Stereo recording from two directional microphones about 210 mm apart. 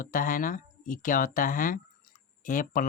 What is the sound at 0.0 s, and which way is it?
Speech, 40° left (ahead or behind).